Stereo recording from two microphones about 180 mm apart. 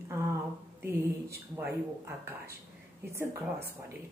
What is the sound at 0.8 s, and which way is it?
Speech, 15° right (ahead or behind).